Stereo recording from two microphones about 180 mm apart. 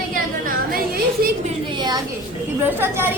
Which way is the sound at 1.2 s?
60° right (ahead or behind).